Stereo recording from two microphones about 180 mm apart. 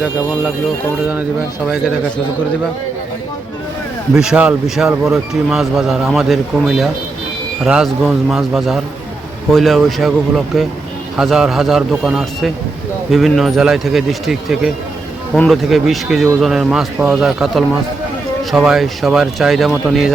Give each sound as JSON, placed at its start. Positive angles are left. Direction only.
{"t": 4.1, "sound": "speech", "side_deg": -5}